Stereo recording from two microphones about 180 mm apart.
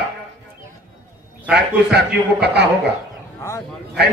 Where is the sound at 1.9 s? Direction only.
70° right (ahead or behind).